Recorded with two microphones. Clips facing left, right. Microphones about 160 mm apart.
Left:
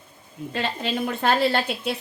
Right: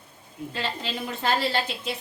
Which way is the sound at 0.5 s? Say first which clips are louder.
Left 5 dB; 60° left (ahead or behind).